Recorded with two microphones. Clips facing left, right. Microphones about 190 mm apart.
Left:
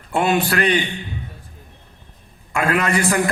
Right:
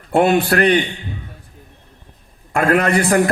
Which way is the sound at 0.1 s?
55° right (ahead or behind).